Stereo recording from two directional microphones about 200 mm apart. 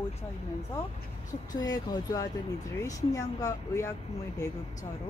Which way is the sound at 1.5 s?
20° left (ahead or behind).